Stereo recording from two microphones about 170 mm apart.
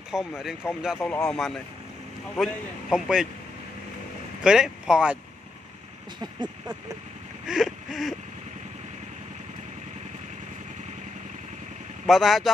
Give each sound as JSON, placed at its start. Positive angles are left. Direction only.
{"t": 0.4, "sound": "a man's voice", "side_deg": -5}
{"t": 0.9, "sound": "a man's voice", "side_deg": 10}
{"t": 4.4, "sound": "speech", "side_deg": -5}
{"t": 6.2, "sound": "speech", "side_deg": -25}
{"t": 7.4, "sound": "a sound", "side_deg": 0}
{"t": 12.1, "sound": "a man's voice", "side_deg": 0}